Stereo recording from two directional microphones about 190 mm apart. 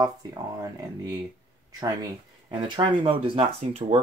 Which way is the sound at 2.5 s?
25° right (ahead or behind).